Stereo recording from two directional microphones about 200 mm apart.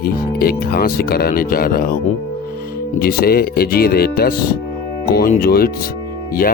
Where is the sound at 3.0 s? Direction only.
50° left (ahead or behind).